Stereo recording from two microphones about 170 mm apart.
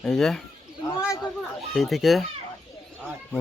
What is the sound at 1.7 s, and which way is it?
Speech, centre (ahead or behind).